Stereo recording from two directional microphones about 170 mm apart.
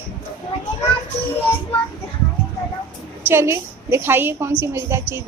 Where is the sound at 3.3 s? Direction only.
15° right (ahead or behind).